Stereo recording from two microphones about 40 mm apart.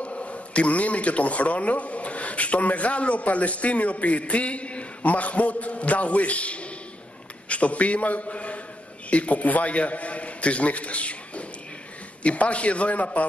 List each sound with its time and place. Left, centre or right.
0.0 s a man's voice: left